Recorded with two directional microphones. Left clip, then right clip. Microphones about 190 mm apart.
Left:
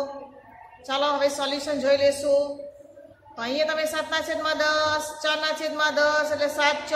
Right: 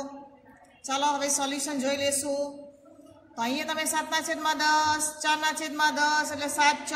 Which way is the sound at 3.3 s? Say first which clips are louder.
Left 5 dB; 35° right (ahead or behind).